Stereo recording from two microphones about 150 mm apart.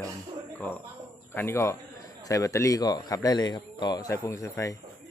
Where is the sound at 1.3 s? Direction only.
15° left (ahead or behind).